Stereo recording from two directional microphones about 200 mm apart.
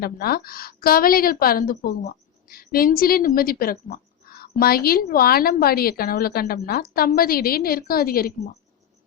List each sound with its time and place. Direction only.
0.0 s a woman's voice: 50° left (ahead or behind)